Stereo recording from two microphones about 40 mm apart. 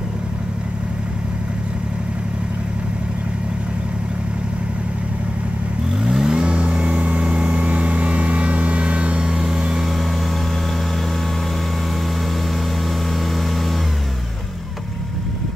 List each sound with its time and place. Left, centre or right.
6.0 s vehicle: centre